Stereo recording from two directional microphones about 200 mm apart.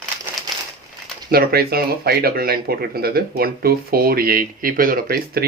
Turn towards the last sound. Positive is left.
turn(degrees=-50)  # may be behind; listen again after turning